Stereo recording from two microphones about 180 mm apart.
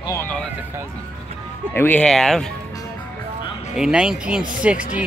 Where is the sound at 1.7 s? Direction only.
10° left (ahead or behind).